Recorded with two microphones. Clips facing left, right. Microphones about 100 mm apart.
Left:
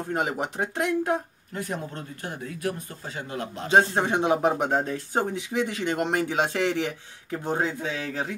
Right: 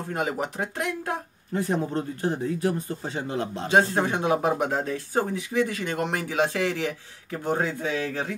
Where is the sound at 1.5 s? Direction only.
30° right (ahead or behind).